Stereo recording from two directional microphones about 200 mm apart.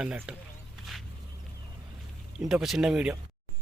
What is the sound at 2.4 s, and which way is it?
Speech, centre (ahead or behind).